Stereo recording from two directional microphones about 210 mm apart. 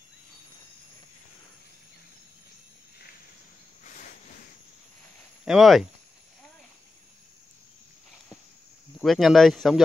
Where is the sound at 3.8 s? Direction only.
40° left (ahead or behind).